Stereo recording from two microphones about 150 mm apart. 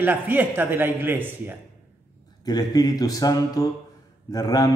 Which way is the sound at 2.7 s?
25° left (ahead or behind).